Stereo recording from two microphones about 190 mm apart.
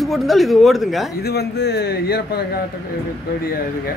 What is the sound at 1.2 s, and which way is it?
Speech, 60° left (ahead or behind).